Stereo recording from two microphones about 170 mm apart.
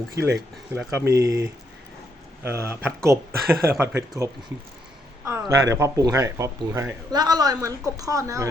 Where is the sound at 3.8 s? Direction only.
15° right (ahead or behind).